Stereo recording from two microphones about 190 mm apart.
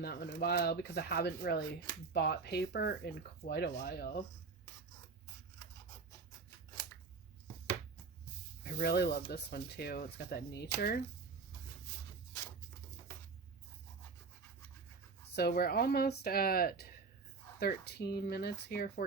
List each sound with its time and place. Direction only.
0.0 s speech: 60° left (ahead or behind)
8.8 s speech: 55° left (ahead or behind)
15.4 s speech: 55° left (ahead or behind)